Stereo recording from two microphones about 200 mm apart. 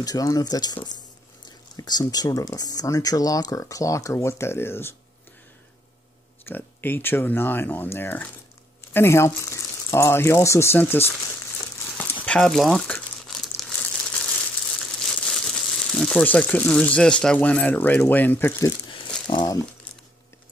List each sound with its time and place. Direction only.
0.0 s speech: 20° left (ahead or behind)
6.4 s speech: 10° left (ahead or behind)
12.0 s crumpling: 10° left (ahead or behind)
19.2 s speech: 20° left (ahead or behind)